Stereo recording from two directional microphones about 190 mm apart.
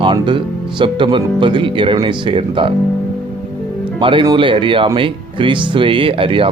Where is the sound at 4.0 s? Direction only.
25° right (ahead or behind).